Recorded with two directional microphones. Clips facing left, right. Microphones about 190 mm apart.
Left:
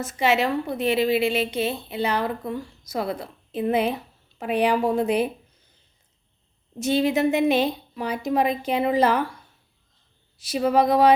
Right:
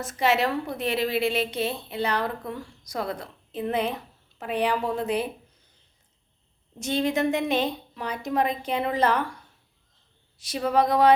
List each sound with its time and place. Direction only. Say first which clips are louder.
0.0 s a woman's voice: left 2 dB; centre (ahead or behind)
6.7 s a woman's voice: left 4 dB; 5° left (ahead or behind)
10.4 s a woman's voice: left 3 dB; 10° left (ahead or behind)